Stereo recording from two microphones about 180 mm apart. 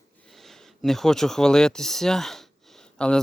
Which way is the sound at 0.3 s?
Centre (ahead or behind).